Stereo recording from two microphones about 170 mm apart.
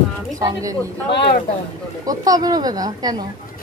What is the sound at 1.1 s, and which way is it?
Speech, 80° left.